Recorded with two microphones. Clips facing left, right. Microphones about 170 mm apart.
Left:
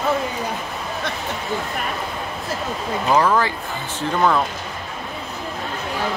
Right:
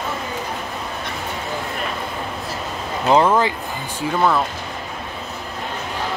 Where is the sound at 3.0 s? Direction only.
20° right (ahead or behind).